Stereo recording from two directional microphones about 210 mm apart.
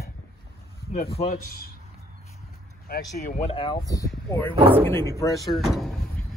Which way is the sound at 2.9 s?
45° left (ahead or behind).